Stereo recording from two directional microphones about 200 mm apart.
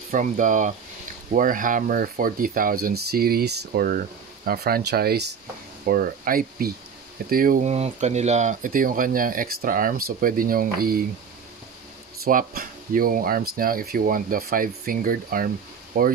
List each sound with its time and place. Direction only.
0.1 s speech: 40° right (ahead or behind)
12.3 s speech: 45° right (ahead or behind)